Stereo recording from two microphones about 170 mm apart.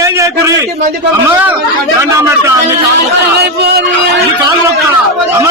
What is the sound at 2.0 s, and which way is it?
Speech, 15° right (ahead or behind).